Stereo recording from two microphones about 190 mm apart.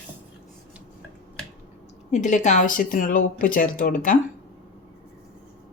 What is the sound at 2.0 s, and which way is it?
Speech, 40° left (ahead or behind).